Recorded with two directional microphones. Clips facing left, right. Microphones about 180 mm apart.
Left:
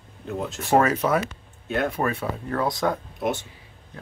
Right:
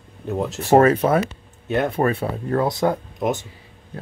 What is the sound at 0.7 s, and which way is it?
Speech, 35° right (ahead or behind).